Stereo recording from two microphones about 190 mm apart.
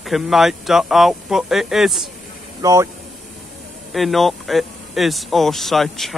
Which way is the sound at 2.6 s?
15° right (ahead or behind).